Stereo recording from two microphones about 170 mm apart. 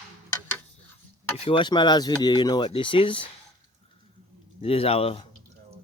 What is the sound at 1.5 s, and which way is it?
Speech, 25° left (ahead or behind).